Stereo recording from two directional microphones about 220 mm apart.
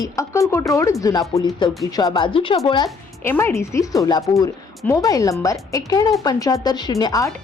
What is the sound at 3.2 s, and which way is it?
A woman's voice, 10° left (ahead or behind).